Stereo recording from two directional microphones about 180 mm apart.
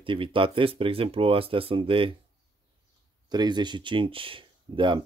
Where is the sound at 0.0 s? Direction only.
30° right (ahead or behind).